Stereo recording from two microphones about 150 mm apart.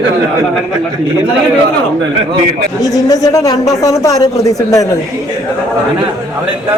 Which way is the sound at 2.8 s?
25° left (ahead or behind).